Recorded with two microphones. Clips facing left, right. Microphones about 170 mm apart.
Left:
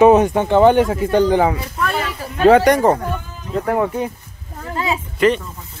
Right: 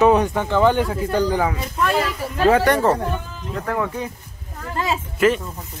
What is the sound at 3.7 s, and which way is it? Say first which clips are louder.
Speech: left 5 dB; 25° left (ahead or behind).